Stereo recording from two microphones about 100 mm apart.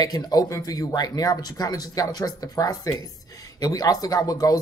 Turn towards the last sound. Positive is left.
turn(degrees=40)  # may be behind; listen again after turning